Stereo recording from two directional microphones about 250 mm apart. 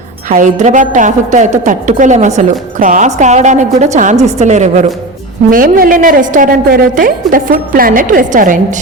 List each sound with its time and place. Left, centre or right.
0.3 s a woman's voice: right